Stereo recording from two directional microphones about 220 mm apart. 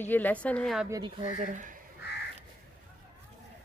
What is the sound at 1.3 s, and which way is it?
Speech, 35° right (ahead or behind).